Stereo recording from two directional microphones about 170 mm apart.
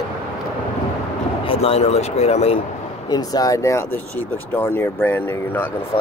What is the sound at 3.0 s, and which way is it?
Speech, 25° left (ahead or behind).